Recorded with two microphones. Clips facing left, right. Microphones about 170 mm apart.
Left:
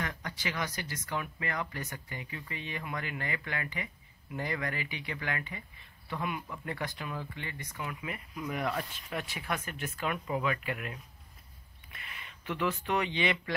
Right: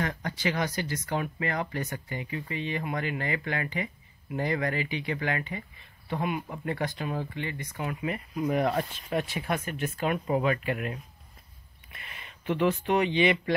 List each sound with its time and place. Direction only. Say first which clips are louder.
0.0 s speech: right 7 dB; 35° right (ahead or behind)
7.8 s speech: right 7 dB; 35° right (ahead or behind)
12.1 s speech: right 8 dB; 25° right (ahead or behind)